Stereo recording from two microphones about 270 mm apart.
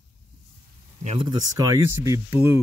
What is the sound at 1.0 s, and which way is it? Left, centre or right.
Speech, right.